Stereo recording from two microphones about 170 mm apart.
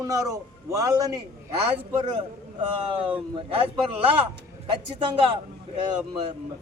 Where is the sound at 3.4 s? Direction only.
35° right (ahead or behind).